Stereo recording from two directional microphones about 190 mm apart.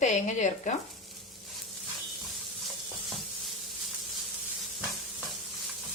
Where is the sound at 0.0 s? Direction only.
40° left (ahead or behind).